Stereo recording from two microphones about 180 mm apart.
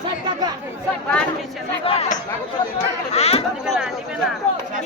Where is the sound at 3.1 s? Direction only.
35° left (ahead or behind).